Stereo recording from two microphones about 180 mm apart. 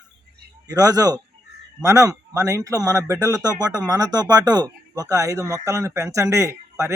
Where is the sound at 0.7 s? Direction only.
20° right (ahead or behind).